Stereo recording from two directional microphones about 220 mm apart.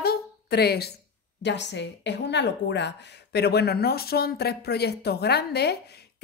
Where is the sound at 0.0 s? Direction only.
45° left (ahead or behind).